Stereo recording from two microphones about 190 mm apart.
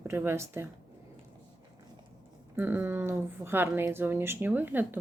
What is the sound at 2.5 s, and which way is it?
Speech, 10° right (ahead or behind).